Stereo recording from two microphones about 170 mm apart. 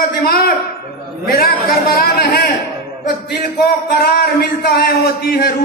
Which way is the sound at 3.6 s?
65° left (ahead or behind).